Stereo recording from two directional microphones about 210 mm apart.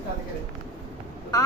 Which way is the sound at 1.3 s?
20° left (ahead or behind).